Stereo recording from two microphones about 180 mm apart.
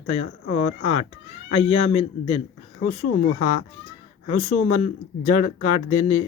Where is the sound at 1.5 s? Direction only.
35° left (ahead or behind).